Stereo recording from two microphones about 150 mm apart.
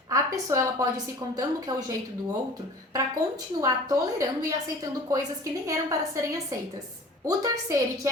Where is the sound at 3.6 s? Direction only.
25° right (ahead or behind).